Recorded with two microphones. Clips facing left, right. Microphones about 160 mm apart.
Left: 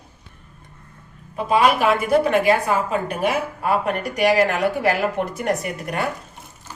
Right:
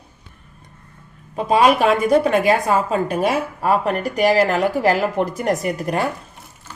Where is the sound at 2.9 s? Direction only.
35° right (ahead or behind).